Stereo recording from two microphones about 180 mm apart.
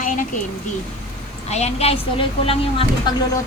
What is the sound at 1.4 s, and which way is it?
A woman's voice, 35° left (ahead or behind).